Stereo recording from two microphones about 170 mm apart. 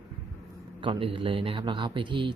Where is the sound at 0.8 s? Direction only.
30° right (ahead or behind).